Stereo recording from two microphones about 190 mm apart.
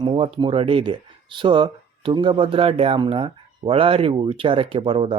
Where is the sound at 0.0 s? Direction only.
25° right (ahead or behind).